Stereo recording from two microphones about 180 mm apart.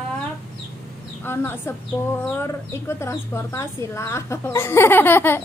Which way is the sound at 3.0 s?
15° left (ahead or behind).